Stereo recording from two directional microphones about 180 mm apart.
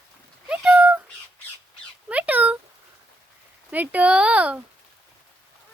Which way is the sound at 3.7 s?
10° right (ahead or behind).